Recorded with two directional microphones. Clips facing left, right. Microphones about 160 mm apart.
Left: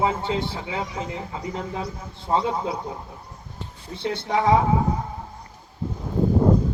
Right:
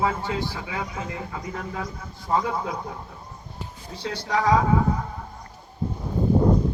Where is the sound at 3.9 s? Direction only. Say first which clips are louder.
Left 2 dB; 25° left (ahead or behind).